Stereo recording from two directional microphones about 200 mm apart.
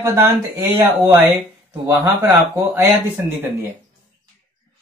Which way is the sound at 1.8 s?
15° right (ahead or behind).